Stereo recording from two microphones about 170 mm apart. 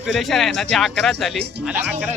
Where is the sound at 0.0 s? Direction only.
Centre (ahead or behind).